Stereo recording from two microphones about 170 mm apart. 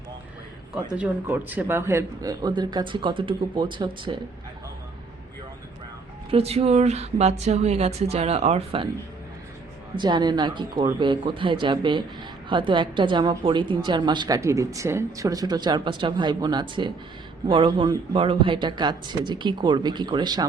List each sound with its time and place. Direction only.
0.9 s a woman's voice: 10° right (ahead or behind); by 4.2 s 30° right (ahead or behind)
6.3 s speech: 35° right (ahead or behind)
9.9 s a woman's voice: 25° right (ahead or behind)